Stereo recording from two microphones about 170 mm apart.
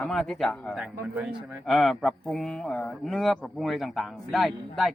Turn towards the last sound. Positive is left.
turn(degrees=0)  # may be behind; listen again after turning